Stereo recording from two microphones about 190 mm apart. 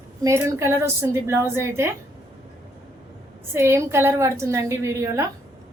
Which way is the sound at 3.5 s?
15° right (ahead or behind).